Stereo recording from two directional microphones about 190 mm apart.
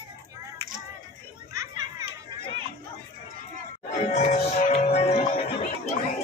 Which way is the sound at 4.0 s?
35° left (ahead or behind).